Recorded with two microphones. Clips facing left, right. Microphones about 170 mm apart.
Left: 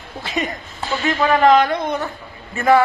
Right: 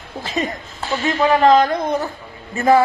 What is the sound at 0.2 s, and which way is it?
Speech, 30° right (ahead or behind).